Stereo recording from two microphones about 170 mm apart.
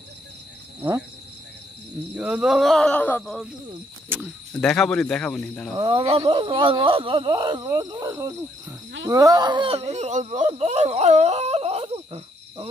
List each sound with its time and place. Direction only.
2.1 s speech: 5° right (ahead or behind)
4.6 s speech: 5° left (ahead or behind)
5.8 s speech: 30° right (ahead or behind)